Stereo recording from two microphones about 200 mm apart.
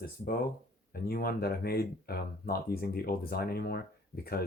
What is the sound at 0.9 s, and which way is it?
Speech, 50° left (ahead or behind).